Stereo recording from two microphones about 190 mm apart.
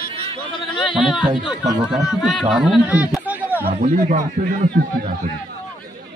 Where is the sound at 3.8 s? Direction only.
45° right (ahead or behind).